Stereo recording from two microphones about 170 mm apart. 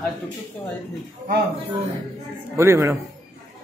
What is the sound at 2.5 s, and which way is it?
Speech, 15° right (ahead or behind).